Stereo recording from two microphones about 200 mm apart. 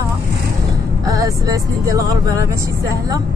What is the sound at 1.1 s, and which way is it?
Speech, 15° right (ahead or behind).